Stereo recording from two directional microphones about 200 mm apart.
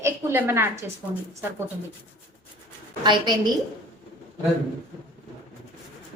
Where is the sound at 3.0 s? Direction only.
20° right (ahead or behind).